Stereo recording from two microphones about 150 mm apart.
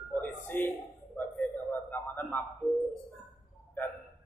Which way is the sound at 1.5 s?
10° left (ahead or behind).